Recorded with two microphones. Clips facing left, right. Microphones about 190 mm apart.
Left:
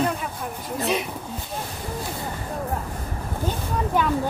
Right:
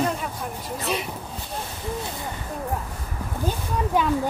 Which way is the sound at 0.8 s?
Centre (ahead or behind).